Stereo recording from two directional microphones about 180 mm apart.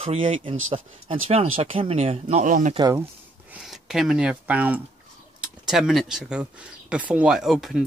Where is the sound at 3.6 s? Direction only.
Centre (ahead or behind).